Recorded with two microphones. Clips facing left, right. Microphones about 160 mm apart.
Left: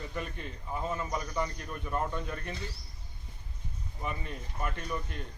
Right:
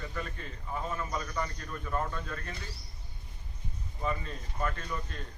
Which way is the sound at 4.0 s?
20° left (ahead or behind).